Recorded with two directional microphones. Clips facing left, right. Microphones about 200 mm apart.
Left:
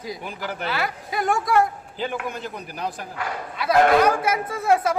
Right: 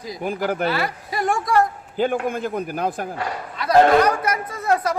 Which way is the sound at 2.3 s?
50° right (ahead or behind).